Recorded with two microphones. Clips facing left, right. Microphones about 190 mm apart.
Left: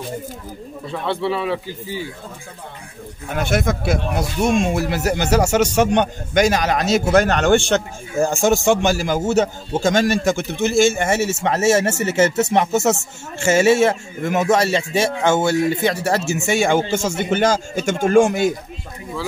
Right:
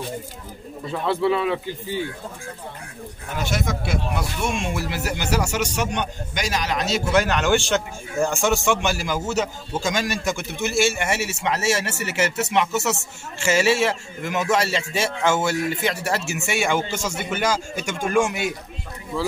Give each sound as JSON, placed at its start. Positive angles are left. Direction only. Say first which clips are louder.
{"t": 1.0, "sound": "speech", "louder": "right 1 dB", "side_deg": 0}
{"t": 3.3, "sound": "speech", "louder": "left 6 dB", "side_deg": 55}
{"t": 9.4, "sound": "speech", "louder": "left 6 dB", "side_deg": 25}
{"t": 9.8, "sound": "speech", "louder": "left 8 dB", "side_deg": 50}